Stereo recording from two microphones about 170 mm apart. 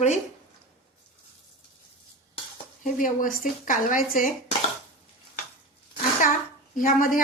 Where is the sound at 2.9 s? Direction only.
50° left (ahead or behind).